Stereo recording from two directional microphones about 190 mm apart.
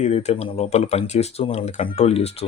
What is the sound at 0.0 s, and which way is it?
Speech, 35° left (ahead or behind).